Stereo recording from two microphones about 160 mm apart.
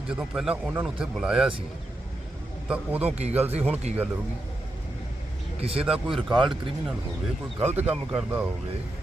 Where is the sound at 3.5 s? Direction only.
10° right (ahead or behind).